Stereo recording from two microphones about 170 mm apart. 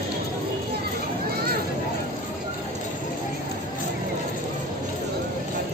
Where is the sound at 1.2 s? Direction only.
65° right (ahead or behind).